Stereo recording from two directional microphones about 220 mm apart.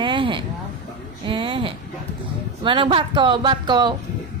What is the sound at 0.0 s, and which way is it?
Vehicle, 20° right (ahead or behind).